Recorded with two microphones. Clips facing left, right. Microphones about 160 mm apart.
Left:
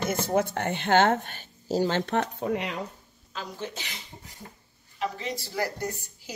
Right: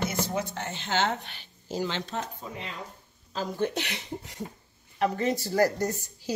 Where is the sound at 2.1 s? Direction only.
70° left (ahead or behind).